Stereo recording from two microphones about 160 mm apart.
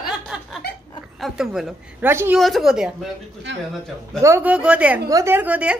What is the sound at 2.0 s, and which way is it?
Speech, 15° right (ahead or behind).